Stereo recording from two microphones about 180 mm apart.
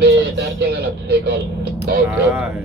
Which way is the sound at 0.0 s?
70° right (ahead or behind).